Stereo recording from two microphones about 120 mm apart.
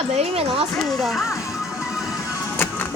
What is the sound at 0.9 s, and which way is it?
Speech, centre (ahead or behind).